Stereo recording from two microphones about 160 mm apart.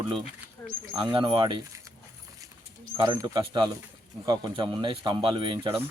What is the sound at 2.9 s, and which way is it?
Speech, 30° right (ahead or behind).